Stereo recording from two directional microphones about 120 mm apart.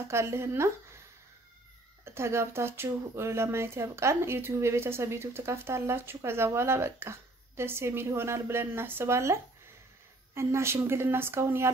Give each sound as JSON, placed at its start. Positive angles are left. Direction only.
{"t": 0.1, "sound": "speech", "side_deg": -20}
{"t": 2.0, "sound": "speech", "side_deg": -20}